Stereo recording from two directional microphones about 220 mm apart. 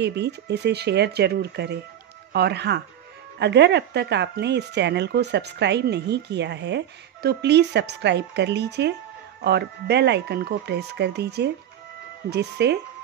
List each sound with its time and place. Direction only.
0.0 s speech: 50° right (ahead or behind)